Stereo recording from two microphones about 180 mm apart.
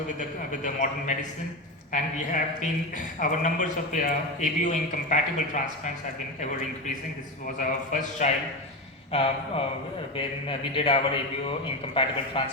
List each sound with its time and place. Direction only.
0.2 s a man's voice: 45° left (ahead or behind)
7.6 s a man's voice: 45° left (ahead or behind)
9.1 s a man's voice: 30° left (ahead or behind)
12.0 s a man's voice: 30° left (ahead or behind)